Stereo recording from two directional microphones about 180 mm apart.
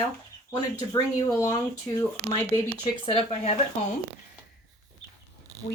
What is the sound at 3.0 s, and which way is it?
Speech, 30° left (ahead or behind).